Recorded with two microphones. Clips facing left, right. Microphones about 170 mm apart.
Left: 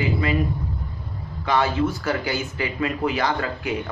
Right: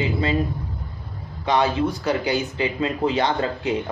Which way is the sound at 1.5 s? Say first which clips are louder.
Right 1 dB; 15° right (ahead or behind).